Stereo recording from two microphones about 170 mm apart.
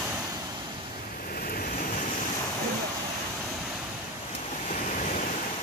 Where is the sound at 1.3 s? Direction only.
60° left (ahead or behind).